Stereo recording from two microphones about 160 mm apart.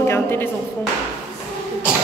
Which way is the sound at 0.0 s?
15° left (ahead or behind).